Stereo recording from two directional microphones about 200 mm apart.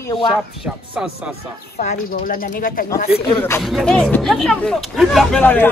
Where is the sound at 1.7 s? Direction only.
40° left (ahead or behind).